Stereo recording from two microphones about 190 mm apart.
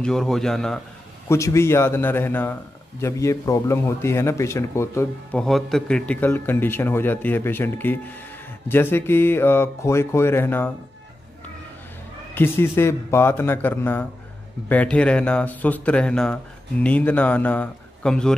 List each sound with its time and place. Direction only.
0.0 s speech: centre (ahead or behind)
1.3 s a man's voice: 15° left (ahead or behind)
12.4 s a man's voice: 10° left (ahead or behind)